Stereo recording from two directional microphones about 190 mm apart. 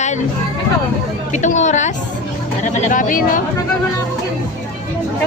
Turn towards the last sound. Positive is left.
turn(degrees=45)  # may be behind; listen again after turning